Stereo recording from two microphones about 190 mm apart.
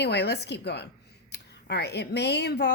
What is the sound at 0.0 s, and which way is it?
Speech, 60° left (ahead or behind).